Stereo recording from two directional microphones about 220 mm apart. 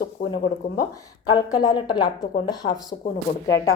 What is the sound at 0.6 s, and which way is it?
Speech, 45° left (ahead or behind).